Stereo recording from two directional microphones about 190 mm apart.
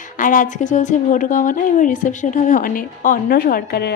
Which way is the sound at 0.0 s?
45° left (ahead or behind).